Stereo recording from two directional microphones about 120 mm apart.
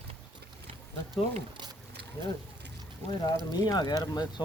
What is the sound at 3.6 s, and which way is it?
Speech, 35° left (ahead or behind).